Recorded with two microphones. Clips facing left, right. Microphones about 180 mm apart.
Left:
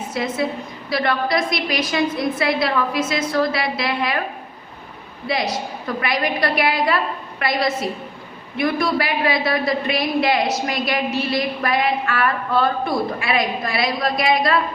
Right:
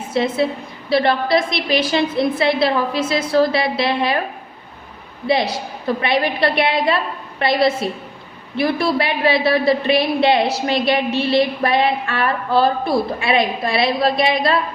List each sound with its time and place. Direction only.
0.1 s a woman's voice: 30° right (ahead or behind)
5.3 s a woman's voice: 30° right (ahead or behind)